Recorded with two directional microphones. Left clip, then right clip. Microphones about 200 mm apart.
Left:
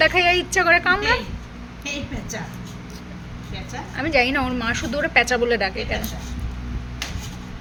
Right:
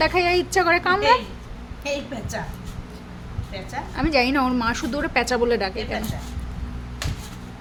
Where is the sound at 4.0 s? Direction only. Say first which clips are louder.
Left 1 dB; 20° right (ahead or behind).